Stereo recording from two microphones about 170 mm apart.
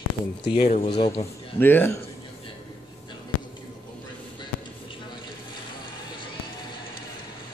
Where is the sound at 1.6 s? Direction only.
10° left (ahead or behind).